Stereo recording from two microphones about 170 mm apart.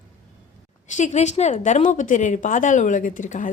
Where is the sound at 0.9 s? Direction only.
45° left (ahead or behind).